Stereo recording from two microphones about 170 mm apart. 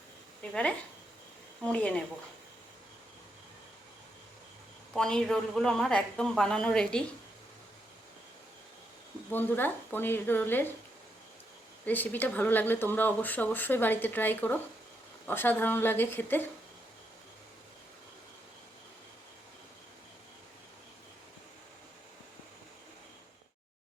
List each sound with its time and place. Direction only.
0.5 s speech: 5° left (ahead or behind)
4.9 s speech: 5° left (ahead or behind)
9.3 s speech: 10° left (ahead or behind)
11.9 s speech: 10° left (ahead or behind)